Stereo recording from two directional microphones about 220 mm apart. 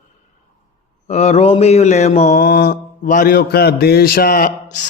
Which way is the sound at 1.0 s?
30° left (ahead or behind).